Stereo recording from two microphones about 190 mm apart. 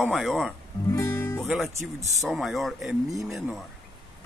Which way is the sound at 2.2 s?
Centre (ahead or behind).